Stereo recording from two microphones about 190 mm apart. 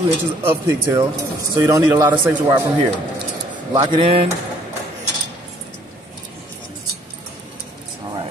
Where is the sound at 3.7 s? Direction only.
30° right (ahead or behind).